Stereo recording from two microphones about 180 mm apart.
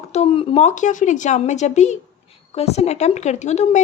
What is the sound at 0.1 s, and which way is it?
Speech, 35° left (ahead or behind).